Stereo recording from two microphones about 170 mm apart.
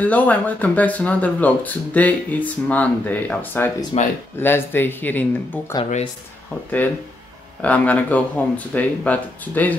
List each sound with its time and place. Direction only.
0.0 s speech: 10° left (ahead or behind)
3.9 s speech: 35° left (ahead or behind)
4.4 s speech: 10° left (ahead or behind)
7.6 s speech: 10° left (ahead or behind)